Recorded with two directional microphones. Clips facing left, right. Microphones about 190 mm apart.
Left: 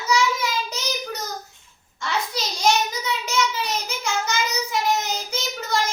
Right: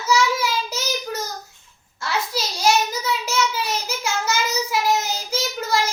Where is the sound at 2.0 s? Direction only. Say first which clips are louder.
Right 1 dB; 5° right (ahead or behind).